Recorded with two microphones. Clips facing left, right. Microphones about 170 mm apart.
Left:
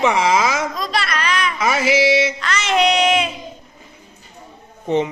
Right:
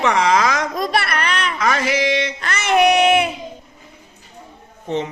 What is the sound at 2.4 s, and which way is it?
Music, 60° right (ahead or behind).